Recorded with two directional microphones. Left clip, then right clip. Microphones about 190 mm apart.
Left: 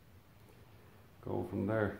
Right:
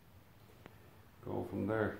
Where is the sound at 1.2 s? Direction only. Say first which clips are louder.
Left 1 dB; 40° left (ahead or behind).